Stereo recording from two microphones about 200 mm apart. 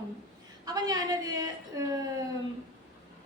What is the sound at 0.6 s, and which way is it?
A woman's voice, 20° right (ahead or behind).